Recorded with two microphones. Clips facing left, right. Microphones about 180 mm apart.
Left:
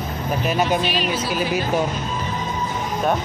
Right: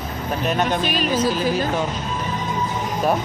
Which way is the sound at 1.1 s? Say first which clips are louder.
Right 4 dB; 10° left (ahead or behind).